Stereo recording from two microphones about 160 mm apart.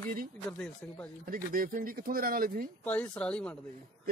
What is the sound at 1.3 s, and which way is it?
Speech, 60° right (ahead or behind).